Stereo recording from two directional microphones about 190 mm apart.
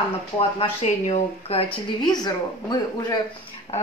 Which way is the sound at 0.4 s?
30° left (ahead or behind).